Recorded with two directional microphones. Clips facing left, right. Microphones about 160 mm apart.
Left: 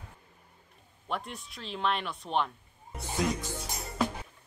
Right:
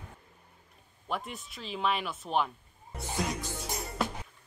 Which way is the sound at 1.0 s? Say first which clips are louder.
Even; centre (ahead or behind).